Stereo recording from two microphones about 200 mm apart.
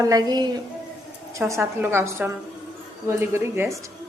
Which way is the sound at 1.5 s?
10° right (ahead or behind).